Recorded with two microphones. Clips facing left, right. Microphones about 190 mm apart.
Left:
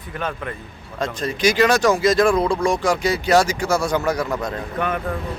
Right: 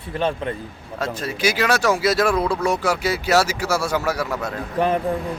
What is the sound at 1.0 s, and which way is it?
Speech, 5° right (ahead or behind).